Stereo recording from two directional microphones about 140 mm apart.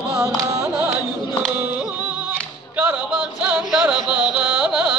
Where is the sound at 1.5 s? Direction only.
10° right (ahead or behind).